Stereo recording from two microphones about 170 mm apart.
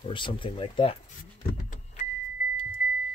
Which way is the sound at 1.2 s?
50° left (ahead or behind).